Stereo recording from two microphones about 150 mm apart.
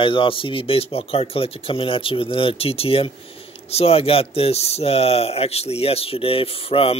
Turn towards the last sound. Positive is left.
turn(degrees=40)  # may be behind; listen again after turning